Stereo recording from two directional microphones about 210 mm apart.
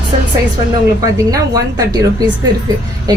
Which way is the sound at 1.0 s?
15° right (ahead or behind).